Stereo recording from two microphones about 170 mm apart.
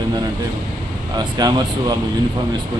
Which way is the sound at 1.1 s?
25° right (ahead or behind).